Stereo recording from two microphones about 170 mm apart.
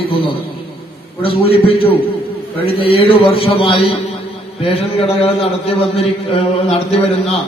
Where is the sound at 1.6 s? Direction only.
35° left (ahead or behind).